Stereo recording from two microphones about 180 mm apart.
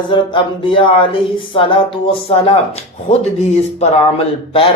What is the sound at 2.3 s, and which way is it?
Music, 30° left (ahead or behind).